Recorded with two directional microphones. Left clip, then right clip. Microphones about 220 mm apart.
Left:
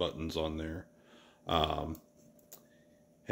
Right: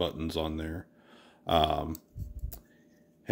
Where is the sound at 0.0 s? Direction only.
25° right (ahead or behind).